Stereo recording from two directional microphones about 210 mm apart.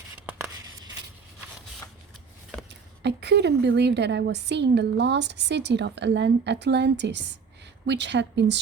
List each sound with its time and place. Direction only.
3.0 s a woman's voice: 55° right (ahead or behind)